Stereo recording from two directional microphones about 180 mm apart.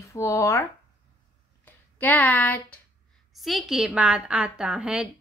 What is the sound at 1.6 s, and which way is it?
A woman's voice, 10° left (ahead or behind).